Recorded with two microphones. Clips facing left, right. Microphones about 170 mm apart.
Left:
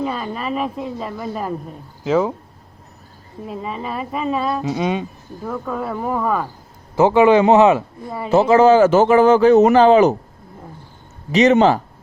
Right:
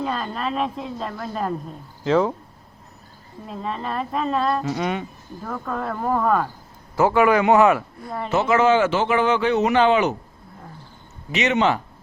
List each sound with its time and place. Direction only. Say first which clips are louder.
0.0 s a woman's voice: left 2 dB; 5° left (ahead or behind)
3.4 s a woman's voice: left 2 dB; 5° left (ahead or behind)
4.6 s speech: left 4 dB; 15° left (ahead or behind)
5.5 s a woman's voice: left 3 dB; 5° left (ahead or behind)
6.9 s a man's voice: left 5 dB; 20° left (ahead or behind)
8.3 s a man's voice: left 6 dB; 35° left (ahead or behind)
11.3 s a man's voice: left 7 dB; 35° left (ahead or behind)